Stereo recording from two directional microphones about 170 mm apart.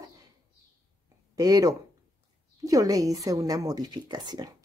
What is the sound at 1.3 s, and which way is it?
Speech, 20° right (ahead or behind).